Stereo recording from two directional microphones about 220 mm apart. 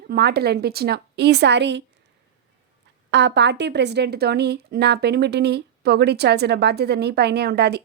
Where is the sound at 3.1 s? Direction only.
50° right (ahead or behind).